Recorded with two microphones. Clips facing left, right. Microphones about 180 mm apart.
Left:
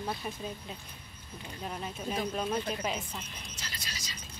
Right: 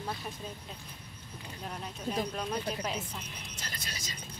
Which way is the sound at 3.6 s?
50° right (ahead or behind).